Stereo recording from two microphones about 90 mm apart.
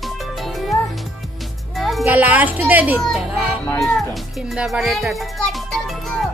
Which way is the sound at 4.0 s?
Centre (ahead or behind).